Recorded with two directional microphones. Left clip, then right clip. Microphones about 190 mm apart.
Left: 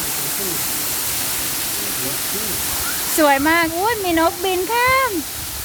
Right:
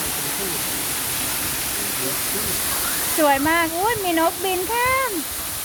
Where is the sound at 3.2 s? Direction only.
25° left (ahead or behind).